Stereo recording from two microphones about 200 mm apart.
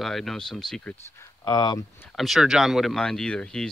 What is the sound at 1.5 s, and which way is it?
Speech, 20° left (ahead or behind).